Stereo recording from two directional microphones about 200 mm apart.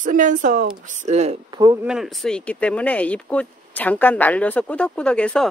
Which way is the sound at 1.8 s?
Centre (ahead or behind).